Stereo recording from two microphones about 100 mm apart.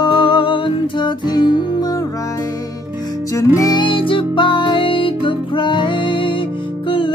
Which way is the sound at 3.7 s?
60° left (ahead or behind).